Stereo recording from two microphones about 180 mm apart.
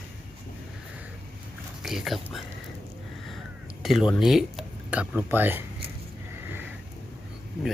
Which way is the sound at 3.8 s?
Centre (ahead or behind).